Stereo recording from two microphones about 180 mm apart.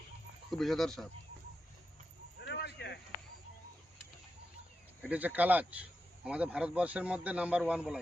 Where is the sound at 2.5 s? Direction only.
70° left (ahead or behind).